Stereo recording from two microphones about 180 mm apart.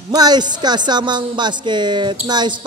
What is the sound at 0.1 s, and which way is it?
Speech, 20° right (ahead or behind).